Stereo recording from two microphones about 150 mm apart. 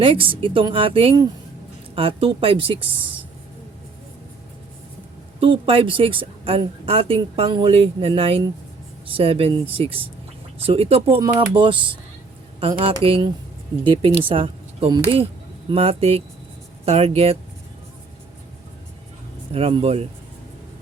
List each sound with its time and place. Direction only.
0.0 s a woman's voice: 35° right (ahead or behind)
5.4 s a woman's voice: 35° right (ahead or behind)
19.5 s a woman's voice: 40° right (ahead or behind)